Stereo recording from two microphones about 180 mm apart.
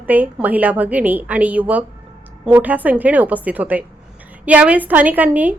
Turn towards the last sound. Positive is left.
turn(degrees=-10)  # may be behind; listen again after turning